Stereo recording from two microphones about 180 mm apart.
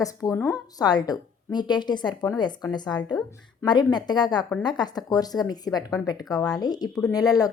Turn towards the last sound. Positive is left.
turn(degrees=20)  # may be behind; listen again after turning